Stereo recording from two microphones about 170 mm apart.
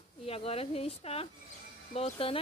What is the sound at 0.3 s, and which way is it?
Speech, 35° left (ahead or behind).